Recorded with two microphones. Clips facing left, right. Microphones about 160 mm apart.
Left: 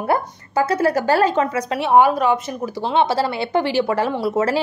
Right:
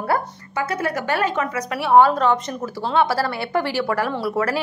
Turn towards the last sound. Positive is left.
turn(degrees=20)  # may be behind; listen again after turning